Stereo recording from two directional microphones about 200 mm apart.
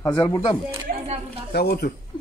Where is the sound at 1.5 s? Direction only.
50° left (ahead or behind).